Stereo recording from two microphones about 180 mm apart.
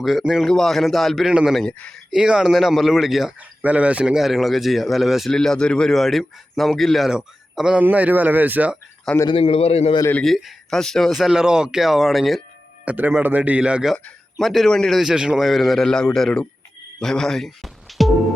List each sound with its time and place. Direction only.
0.0 s a man's voice: centre (ahead or behind)
9.2 s a man's voice: 30° left (ahead or behind)
10.0 s a man's voice: 10° left (ahead or behind)